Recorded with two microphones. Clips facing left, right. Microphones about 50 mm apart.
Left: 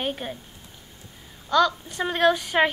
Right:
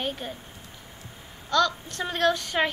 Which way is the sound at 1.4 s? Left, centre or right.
Centre.